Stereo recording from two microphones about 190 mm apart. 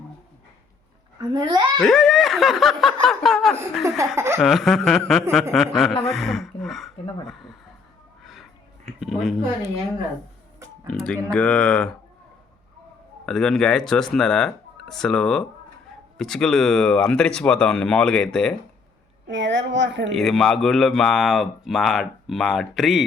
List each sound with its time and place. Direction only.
1.3 s a child's voice: 25° right (ahead or behind)
1.8 s speech: centre (ahead or behind)
3.8 s laughter: 15° right (ahead or behind)
4.4 s speech: centre (ahead or behind)
8.2 s a sound: centre (ahead or behind)
9.0 s speech: centre (ahead or behind)
10.9 s speech: 5° left (ahead or behind)
13.2 s speech: 5° left (ahead or behind)
19.3 s a woman's voice: 70° right (ahead or behind)
20.1 s speech: centre (ahead or behind)